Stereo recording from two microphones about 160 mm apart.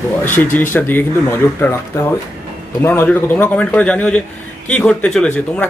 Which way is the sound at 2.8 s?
15° left (ahead or behind).